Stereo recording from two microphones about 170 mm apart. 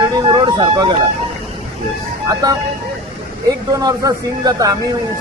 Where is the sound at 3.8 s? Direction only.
20° right (ahead or behind).